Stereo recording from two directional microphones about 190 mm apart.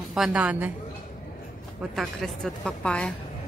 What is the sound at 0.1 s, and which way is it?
Speech, 5° right (ahead or behind).